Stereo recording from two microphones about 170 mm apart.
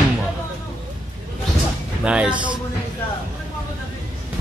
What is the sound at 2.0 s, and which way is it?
Speech, 5° right (ahead or behind).